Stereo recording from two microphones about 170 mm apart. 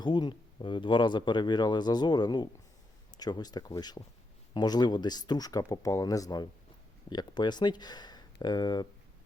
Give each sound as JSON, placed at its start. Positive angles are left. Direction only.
{"t": 0.0, "sound": "speech", "side_deg": 25}